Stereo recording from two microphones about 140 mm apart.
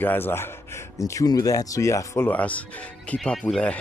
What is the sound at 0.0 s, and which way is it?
Speech, 15° left (ahead or behind).